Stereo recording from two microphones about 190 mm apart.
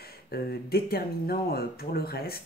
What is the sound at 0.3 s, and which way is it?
Speech, 55° left (ahead or behind).